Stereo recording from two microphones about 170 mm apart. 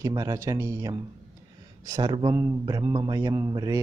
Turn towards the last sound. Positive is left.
turn(degrees=-20)  # may be behind; listen again after turning